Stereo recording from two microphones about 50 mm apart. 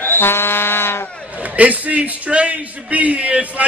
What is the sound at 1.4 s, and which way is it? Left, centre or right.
A man's voice, right.